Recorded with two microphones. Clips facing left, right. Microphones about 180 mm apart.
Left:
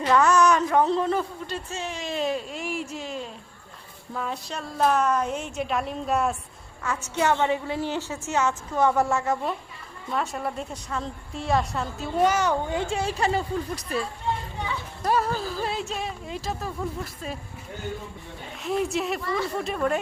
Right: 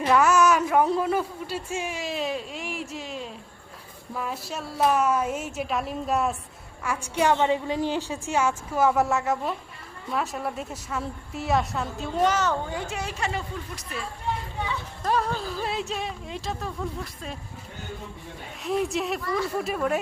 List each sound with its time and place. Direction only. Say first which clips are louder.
0.0 s a woman's voice: even; 10° right (ahead or behind)
6.8 s a woman's voice: right 1 dB; 10° right (ahead or behind); by 12.5 s 10° left (ahead or behind)
12.7 s speech: left 5 dB; 30° left (ahead or behind)
15.0 s a woman's voice: left 1 dB; 5° left (ahead or behind)
18.6 s a woman's voice: even; centre (ahead or behind)